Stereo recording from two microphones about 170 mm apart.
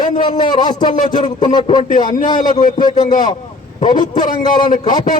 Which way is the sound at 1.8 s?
50° left (ahead or behind).